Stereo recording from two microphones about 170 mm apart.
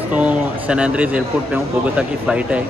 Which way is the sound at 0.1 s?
5° right (ahead or behind).